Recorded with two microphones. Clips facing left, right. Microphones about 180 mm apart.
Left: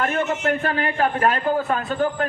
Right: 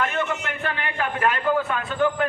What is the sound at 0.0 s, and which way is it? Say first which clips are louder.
A man's voice: left 4 dB; 40° left (ahead or behind).